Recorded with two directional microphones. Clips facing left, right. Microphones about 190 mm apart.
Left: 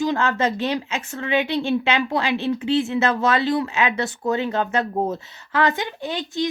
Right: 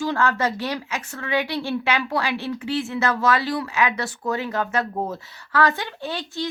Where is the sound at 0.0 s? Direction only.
20° left (ahead or behind).